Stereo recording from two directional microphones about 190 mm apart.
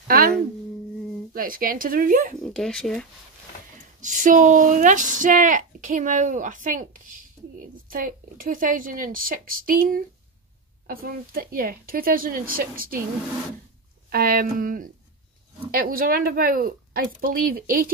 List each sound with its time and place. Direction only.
1.3 s speech: 50° right (ahead or behind)
2.4 s speech: centre (ahead or behind)
4.0 s speech: 40° right (ahead or behind)
14.1 s speech: 50° right (ahead or behind)